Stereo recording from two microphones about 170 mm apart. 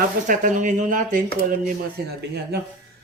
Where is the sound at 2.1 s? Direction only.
70° right (ahead or behind).